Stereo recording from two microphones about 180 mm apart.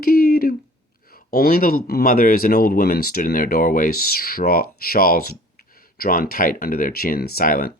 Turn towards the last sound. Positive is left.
turn(degrees=55)  # may be behind; listen again after turning